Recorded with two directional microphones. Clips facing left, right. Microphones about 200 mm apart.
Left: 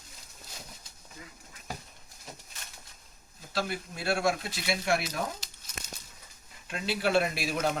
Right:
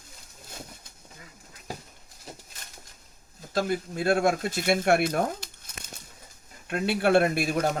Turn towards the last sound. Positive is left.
turn(degrees=-50)  # may be behind; listen again after turning